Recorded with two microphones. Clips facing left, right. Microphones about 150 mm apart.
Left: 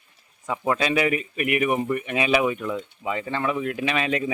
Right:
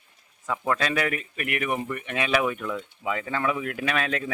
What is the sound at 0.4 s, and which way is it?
Speech, 15° left (ahead or behind).